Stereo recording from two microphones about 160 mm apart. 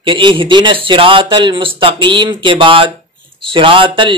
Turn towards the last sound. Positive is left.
turn(degrees=-30)  # may be behind; listen again after turning